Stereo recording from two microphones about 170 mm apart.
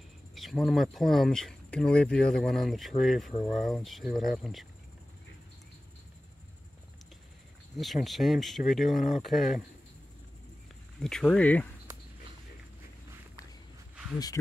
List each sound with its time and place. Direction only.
0.3 s cricket: centre (ahead or behind)
0.9 s speech: centre (ahead or behind)
7.7 s speech: centre (ahead or behind)
11.0 s speech: 5° left (ahead or behind)
14.1 s speech: 20° left (ahead or behind)